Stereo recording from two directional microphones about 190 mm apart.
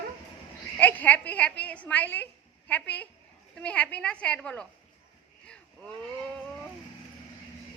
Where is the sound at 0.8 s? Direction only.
10° left (ahead or behind).